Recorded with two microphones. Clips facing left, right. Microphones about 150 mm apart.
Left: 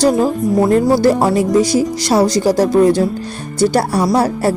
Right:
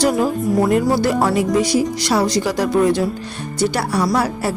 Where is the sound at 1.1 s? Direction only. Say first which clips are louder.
Left 3 dB; 25° left (ahead or behind).